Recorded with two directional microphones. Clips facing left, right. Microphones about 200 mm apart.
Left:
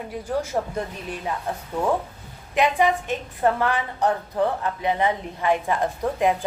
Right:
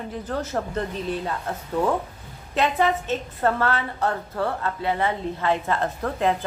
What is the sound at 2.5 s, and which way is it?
A woman's voice, 15° left (ahead or behind).